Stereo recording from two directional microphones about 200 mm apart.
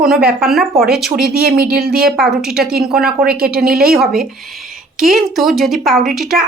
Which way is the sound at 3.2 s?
50° right (ahead or behind).